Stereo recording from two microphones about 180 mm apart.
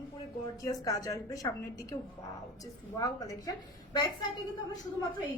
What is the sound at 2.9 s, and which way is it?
Speech, 20° left (ahead or behind).